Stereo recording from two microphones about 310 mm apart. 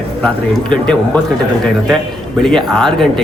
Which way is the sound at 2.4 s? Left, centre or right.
Centre.